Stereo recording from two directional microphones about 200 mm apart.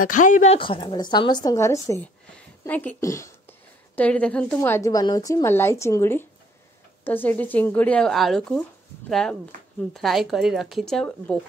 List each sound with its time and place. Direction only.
0.0 s a woman's voice: 40° left (ahead or behind); by 11.3 s 5° left (ahead or behind)